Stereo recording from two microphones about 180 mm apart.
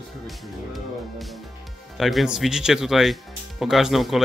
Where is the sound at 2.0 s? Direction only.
Centre (ahead or behind).